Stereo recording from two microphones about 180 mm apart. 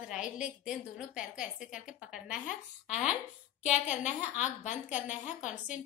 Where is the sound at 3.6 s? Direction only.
40° left (ahead or behind).